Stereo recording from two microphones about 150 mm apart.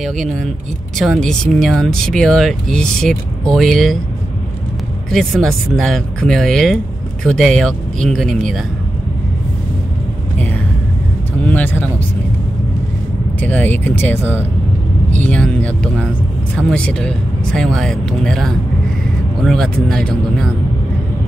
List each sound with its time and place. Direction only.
0.0 s speech: centre (ahead or behind)
5.1 s speech: centre (ahead or behind)
11.4 s speech: 10° left (ahead or behind)
13.4 s speech: 10° left (ahead or behind)